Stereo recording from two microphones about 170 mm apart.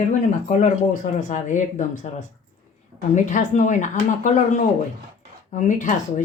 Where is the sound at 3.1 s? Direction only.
45° left (ahead or behind).